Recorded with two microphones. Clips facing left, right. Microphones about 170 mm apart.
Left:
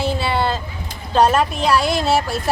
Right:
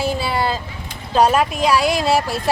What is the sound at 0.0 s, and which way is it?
Vehicle, 10° right (ahead or behind).